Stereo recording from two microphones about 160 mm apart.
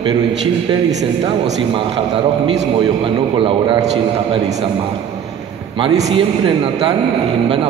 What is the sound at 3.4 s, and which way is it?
Speech, 35° right (ahead or behind).